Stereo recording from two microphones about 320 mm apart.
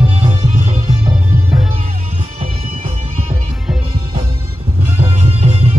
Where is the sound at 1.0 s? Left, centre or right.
Centre.